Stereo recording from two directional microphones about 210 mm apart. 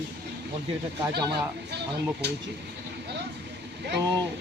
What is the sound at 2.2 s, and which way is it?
Whip, 55° right (ahead or behind).